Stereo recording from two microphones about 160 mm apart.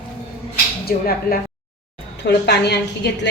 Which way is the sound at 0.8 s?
65° left (ahead or behind).